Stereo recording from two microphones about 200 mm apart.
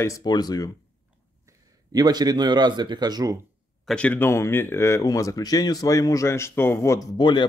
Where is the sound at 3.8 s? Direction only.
5° left (ahead or behind).